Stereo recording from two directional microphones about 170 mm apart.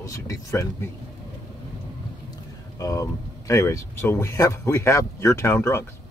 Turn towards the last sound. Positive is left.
turn(degrees=15)  # may be behind; listen again after turning